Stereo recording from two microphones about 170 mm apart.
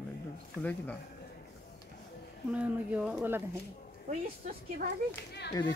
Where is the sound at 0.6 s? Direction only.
10° left (ahead or behind).